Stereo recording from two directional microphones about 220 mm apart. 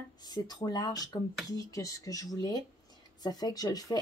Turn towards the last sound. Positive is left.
turn(degrees=15)  # may be behind; listen again after turning